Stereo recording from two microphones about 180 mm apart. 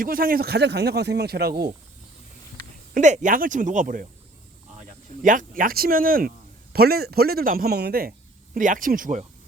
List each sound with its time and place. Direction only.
0.0 s speech: 55° right (ahead or behind)
2.9 s speech: 40° right (ahead or behind)
5.2 s speech: 45° right (ahead or behind)
8.5 s speech: 50° right (ahead or behind)